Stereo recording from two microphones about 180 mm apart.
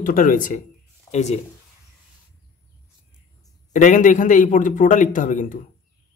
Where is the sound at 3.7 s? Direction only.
45° left (ahead or behind).